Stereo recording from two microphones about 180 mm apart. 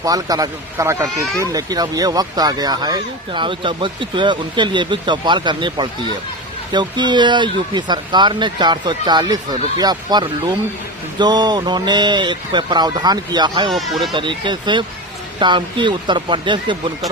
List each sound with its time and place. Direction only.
0.0 s speech: 20° right (ahead or behind)
13.7 s speech: centre (ahead or behind)
14.1 s speech: 25° right (ahead or behind)